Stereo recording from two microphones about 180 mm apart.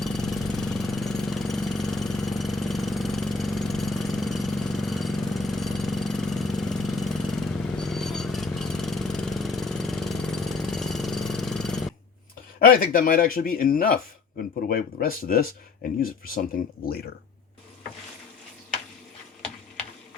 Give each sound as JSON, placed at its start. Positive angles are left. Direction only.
{"t": 0.0, "sound": "engine", "side_deg": 0}
{"t": 12.5, "sound": "speech", "side_deg": 55}